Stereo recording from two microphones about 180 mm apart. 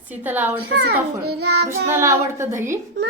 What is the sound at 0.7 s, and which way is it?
Child singing, 65° right (ahead or behind).